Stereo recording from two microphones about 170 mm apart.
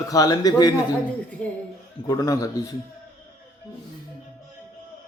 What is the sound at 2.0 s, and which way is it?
Speech, 20° left (ahead or behind).